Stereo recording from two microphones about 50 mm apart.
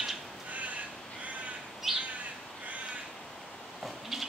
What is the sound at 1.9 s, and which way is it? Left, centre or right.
Bird, centre.